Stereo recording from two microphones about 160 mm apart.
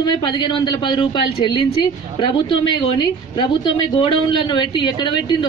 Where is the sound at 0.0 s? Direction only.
25° left (ahead or behind).